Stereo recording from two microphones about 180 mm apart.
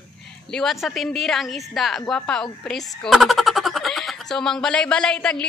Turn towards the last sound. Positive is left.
turn(degrees=5)  # may be behind; listen again after turning